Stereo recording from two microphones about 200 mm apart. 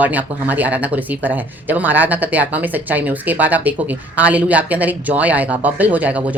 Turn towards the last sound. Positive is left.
turn(degrees=-5)  # may be behind; listen again after turning